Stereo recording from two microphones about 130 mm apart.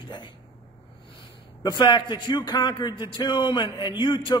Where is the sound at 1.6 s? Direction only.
35° left (ahead or behind).